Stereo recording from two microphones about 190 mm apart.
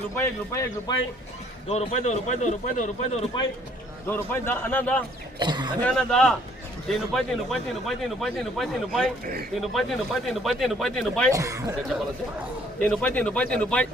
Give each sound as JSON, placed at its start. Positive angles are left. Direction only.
{"t": 0.2, "sound": "a man's voice", "side_deg": 15}
{"t": 1.7, "sound": "a man's voice", "side_deg": 35}
{"t": 4.1, "sound": "a man's voice", "side_deg": 10}
{"t": 5.4, "sound": "speech", "side_deg": -25}
{"t": 5.8, "sound": "speech", "side_deg": 5}
{"t": 11.3, "sound": "speech", "side_deg": -15}
{"t": 12.8, "sound": "a man's voice", "side_deg": 10}